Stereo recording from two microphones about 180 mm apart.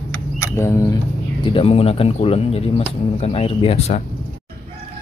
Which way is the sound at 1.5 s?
30° left (ahead or behind).